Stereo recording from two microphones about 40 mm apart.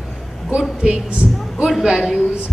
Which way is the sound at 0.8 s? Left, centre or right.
Right.